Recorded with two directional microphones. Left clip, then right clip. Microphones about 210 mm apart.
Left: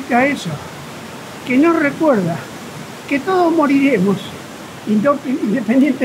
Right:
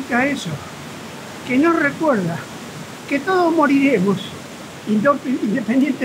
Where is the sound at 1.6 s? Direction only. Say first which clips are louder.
Left 3 dB; 10° left (ahead or behind).